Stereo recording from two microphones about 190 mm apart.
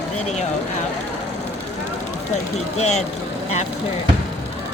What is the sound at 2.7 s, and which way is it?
Speech, 35° left (ahead or behind).